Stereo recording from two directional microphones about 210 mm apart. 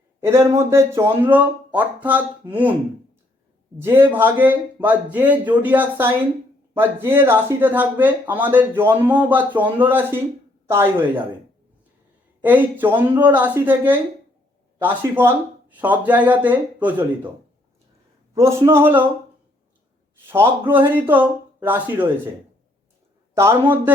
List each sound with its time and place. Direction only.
0.2 s speech: 10° right (ahead or behind)
3.8 s speech: 10° right (ahead or behind)
12.4 s speech: 10° right (ahead or behind)
18.3 s speech: 15° right (ahead or behind)
20.2 s speech: 10° right (ahead or behind)
23.3 s speech: 15° right (ahead or behind)